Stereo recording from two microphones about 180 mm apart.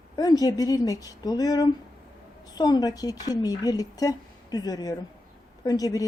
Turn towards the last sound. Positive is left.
turn(degrees=20)  # may be behind; listen again after turning